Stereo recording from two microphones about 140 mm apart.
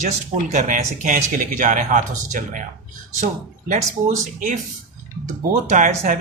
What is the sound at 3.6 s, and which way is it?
Speech, 65° right (ahead or behind).